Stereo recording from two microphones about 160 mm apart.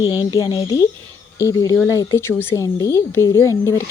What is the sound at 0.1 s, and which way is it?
Speech, 25° left (ahead or behind).